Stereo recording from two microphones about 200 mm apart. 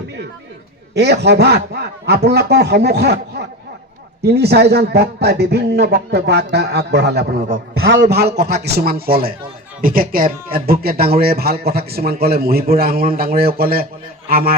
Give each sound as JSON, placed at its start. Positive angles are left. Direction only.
{"t": 0.9, "sound": "a man's voice", "side_deg": -55}
{"t": 7.5, "sound": "a man's voice", "side_deg": -65}